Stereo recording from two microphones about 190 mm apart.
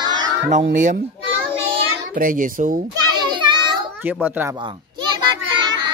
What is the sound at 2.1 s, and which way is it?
Speech, 45° right (ahead or behind).